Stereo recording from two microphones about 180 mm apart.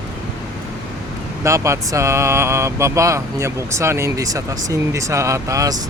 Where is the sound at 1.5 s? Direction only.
15° right (ahead or behind).